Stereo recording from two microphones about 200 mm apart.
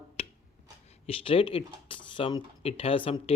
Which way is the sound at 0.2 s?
30° left (ahead or behind).